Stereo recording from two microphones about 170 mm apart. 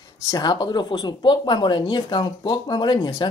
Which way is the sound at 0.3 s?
25° left (ahead or behind).